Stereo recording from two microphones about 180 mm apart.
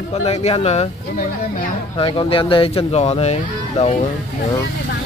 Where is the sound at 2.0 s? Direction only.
30° left (ahead or behind).